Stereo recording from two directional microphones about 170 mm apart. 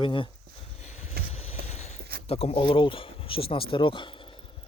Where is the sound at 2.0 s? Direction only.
65° right (ahead or behind).